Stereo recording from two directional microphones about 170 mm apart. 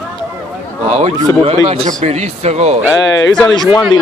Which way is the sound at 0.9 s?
35° right (ahead or behind).